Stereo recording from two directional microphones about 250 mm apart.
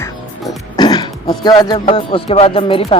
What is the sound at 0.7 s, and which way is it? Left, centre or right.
Speech, centre.